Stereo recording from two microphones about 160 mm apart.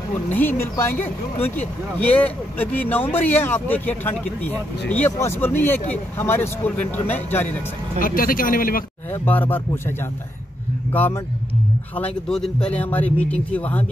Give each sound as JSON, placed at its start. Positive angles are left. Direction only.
{"t": 0.3, "sound": "speech", "side_deg": 10}
{"t": 8.0, "sound": "a man's voice", "side_deg": 60}
{"t": 9.1, "sound": "speech", "side_deg": 10}
{"t": 10.9, "sound": "speech", "side_deg": 10}